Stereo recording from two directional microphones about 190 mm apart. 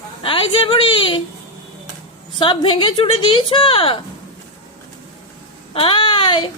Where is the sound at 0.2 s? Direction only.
25° left (ahead or behind).